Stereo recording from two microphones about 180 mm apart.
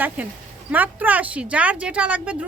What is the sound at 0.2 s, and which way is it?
A man's voice, 10° right (ahead or behind).